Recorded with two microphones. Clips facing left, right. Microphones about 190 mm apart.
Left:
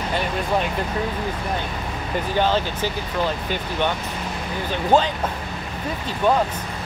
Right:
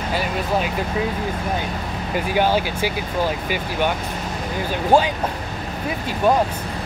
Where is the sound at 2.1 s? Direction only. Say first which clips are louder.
Right 2 dB; 10° right (ahead or behind).